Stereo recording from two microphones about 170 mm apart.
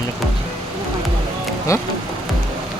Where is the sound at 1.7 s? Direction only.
15° left (ahead or behind).